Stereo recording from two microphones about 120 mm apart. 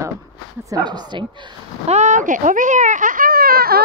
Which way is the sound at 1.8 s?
75° right (ahead or behind).